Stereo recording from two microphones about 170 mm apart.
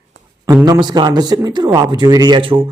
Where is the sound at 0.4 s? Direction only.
25° right (ahead or behind).